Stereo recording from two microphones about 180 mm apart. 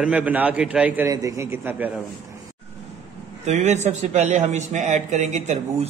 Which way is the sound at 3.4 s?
40° right (ahead or behind).